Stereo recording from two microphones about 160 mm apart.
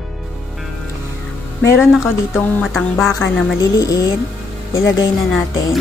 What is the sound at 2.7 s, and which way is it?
Speech, centre (ahead or behind).